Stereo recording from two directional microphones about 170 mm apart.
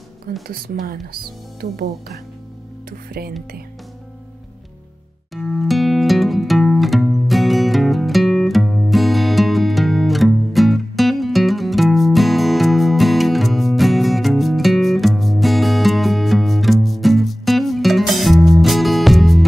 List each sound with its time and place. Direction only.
0.5 s speech: 60° right (ahead or behind)
2.9 s music: 60° right (ahead or behind)
5.3 s music: centre (ahead or behind)